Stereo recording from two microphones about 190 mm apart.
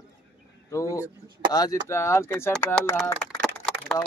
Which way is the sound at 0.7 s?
15° left (ahead or behind).